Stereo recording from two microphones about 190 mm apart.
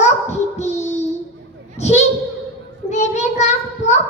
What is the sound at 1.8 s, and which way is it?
A child's voice, 35° left (ahead or behind).